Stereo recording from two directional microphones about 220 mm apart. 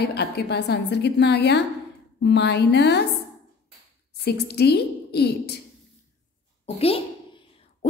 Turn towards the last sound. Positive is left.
turn(degrees=25)  # may be behind; listen again after turning